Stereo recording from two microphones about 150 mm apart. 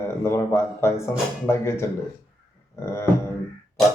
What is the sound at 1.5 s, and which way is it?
Speech, 15° left (ahead or behind).